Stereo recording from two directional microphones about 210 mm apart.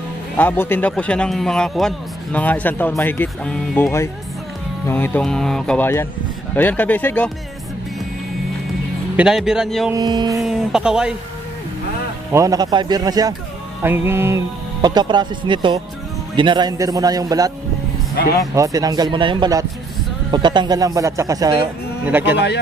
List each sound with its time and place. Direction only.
0.4 s a man's voice: 10° left (ahead or behind)
9.1 s speech: 5° right (ahead or behind)
9.9 s a man's voice: 20° right (ahead or behind)
10.4 s speech: 5° right (ahead or behind)
12.3 s a man's voice: 15° right (ahead or behind)
18.5 s a man's voice: 15° right (ahead or behind)